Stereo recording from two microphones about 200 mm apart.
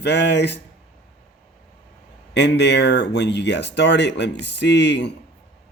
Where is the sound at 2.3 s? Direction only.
60° left (ahead or behind).